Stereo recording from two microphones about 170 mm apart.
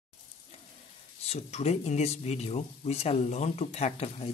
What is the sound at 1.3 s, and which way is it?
Speech, 40° left (ahead or behind).